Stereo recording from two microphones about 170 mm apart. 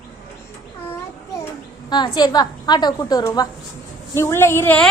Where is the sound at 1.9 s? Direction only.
25° left (ahead or behind).